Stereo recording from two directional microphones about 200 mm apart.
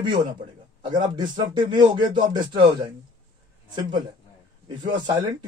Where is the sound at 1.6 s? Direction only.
20° right (ahead or behind).